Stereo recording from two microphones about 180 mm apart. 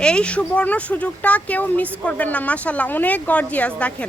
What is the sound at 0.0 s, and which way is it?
Speech, 5° left (ahead or behind).